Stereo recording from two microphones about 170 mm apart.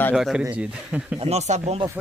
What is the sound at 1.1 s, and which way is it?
Speech, 40° right (ahead or behind).